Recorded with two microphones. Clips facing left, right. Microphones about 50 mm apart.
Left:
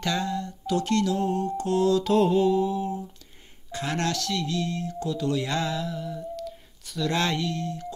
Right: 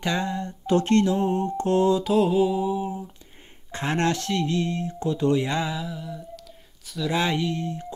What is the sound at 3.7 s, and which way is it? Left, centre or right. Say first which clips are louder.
Music: right 3 dB; right.